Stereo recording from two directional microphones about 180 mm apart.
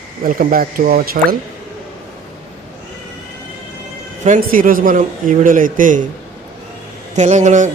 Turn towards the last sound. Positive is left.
turn(degrees=-40)  # may be behind; listen again after turning